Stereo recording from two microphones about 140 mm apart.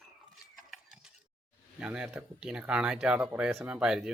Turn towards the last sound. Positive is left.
turn(degrees=-5)  # may be behind; listen again after turning